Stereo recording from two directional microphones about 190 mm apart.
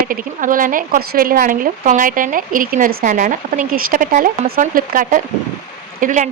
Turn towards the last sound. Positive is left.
turn(degrees=-40)  # may be behind; listen again after turning